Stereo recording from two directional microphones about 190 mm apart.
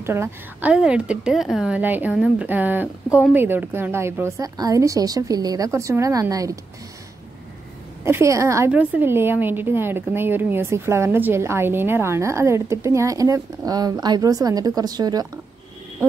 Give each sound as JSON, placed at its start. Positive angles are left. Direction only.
{"t": 0.0, "sound": "a woman's voice", "side_deg": -10}
{"t": 8.0, "sound": "a woman's voice", "side_deg": -15}